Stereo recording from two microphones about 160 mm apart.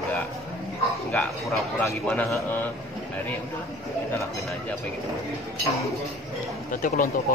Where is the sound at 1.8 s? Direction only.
10° left (ahead or behind).